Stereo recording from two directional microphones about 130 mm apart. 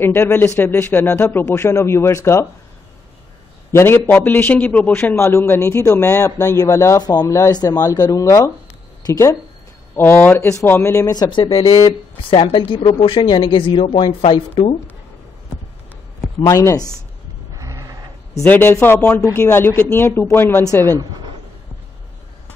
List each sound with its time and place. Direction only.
0.0 s speech: 15° left (ahead or behind)
3.7 s speech: 15° left (ahead or behind)
9.9 s speech: 15° left (ahead or behind); by 11.4 s 35° left (ahead or behind)
11.4 s a woman's voice: 45° left (ahead or behind)
16.4 s speech: 25° left (ahead or behind)
17.6 s a sound: 25° right (ahead or behind)
18.3 s speech: 20° left (ahead or behind)
21.0 s speech: 35° right (ahead or behind)